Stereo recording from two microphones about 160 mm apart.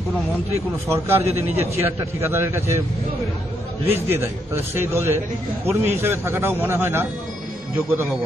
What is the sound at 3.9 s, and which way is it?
Speech, 15° right (ahead or behind).